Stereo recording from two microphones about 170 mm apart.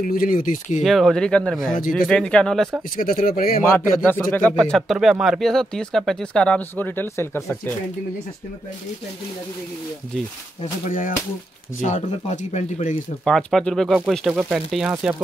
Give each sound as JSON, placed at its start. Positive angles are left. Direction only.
{"t": 0.0, "sound": "speech", "side_deg": 55}
{"t": 0.8, "sound": "speech", "side_deg": 0}
{"t": 1.8, "sound": "speech", "side_deg": 55}
{"t": 2.0, "sound": "speech", "side_deg": 5}
{"t": 3.0, "sound": "speech", "side_deg": 55}
{"t": 3.7, "sound": "speech", "side_deg": 10}
{"t": 10.6, "sound": "speech", "side_deg": 50}
{"t": 13.2, "sound": "speech", "side_deg": 0}